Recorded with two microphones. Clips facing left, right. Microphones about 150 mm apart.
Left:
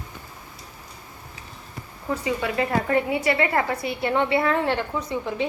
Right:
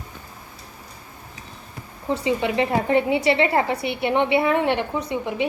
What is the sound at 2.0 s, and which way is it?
A woman's voice, 25° right (ahead or behind).